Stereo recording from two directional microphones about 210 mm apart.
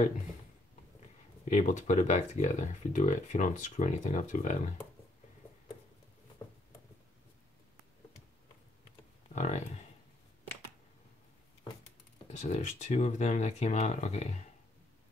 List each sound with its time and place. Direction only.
1.5 s speech: 35° left (ahead or behind)
9.3 s speech: 30° left (ahead or behind)
12.3 s speech: 35° left (ahead or behind)